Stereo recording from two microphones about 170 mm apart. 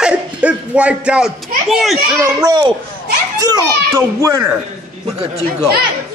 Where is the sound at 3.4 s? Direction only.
20° right (ahead or behind).